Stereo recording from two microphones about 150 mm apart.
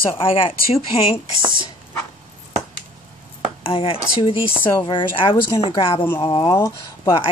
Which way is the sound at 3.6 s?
35° left (ahead or behind).